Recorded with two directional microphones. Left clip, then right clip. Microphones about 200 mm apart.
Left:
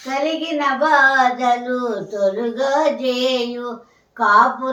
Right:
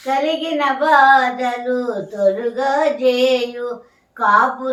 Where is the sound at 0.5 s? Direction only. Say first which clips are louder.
Right 1 dB; 20° left (ahead or behind).